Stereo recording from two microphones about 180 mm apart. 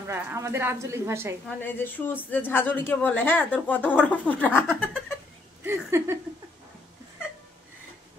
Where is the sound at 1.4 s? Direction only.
10° left (ahead or behind).